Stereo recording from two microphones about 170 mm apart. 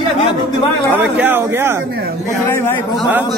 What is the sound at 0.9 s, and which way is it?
Speech, 10° right (ahead or behind).